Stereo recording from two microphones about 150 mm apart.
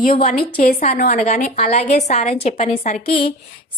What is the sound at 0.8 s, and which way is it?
A woman's voice, 55° left (ahead or behind).